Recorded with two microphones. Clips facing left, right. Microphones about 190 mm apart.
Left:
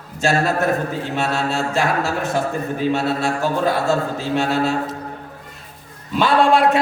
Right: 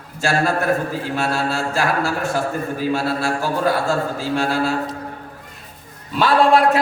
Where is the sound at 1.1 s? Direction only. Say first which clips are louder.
Left 1 dB; 20° left (ahead or behind).